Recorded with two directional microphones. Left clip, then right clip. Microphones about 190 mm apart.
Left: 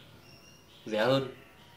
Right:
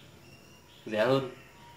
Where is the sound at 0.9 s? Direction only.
25° left (ahead or behind).